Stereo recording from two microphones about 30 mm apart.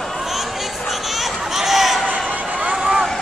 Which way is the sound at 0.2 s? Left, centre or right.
Centre.